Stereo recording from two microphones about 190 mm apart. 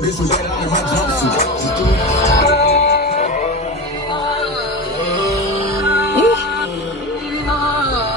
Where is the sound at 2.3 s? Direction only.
60° left (ahead or behind).